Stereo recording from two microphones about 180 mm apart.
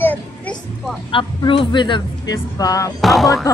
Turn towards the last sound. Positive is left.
turn(degrees=0)  # may be behind; listen again after turning